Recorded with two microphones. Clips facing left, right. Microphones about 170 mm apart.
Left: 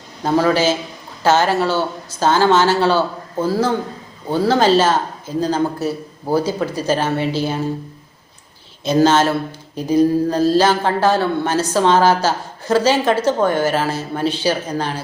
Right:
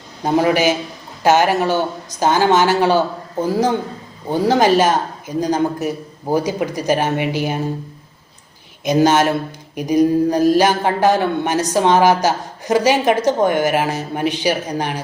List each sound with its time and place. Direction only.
0.3 s a man's voice: 15° right (ahead or behind)
8.8 s a man's voice: 15° right (ahead or behind)